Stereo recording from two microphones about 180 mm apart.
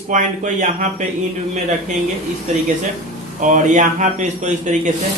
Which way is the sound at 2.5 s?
40° right (ahead or behind).